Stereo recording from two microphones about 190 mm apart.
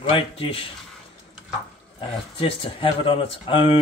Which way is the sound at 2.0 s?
30° left (ahead or behind).